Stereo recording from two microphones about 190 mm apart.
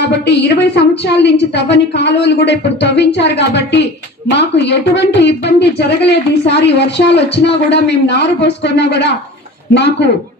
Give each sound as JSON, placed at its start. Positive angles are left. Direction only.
{"t": 0.3, "sound": "speech", "side_deg": 60}